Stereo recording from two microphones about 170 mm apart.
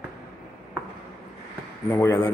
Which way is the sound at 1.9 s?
10° left (ahead or behind).